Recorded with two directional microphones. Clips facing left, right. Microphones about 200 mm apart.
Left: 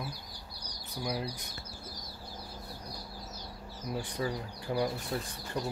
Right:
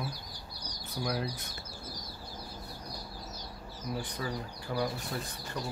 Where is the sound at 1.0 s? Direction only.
10° left (ahead or behind).